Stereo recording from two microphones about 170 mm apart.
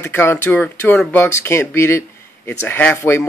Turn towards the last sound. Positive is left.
turn(degrees=15)  # may be behind; listen again after turning